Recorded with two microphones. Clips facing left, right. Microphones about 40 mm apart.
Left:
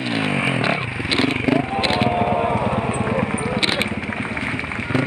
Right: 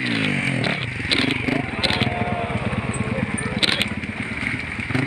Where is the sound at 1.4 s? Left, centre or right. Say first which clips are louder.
Left 4 dB; centre.